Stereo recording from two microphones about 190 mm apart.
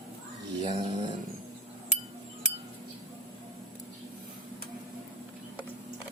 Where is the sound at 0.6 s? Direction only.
30° right (ahead or behind).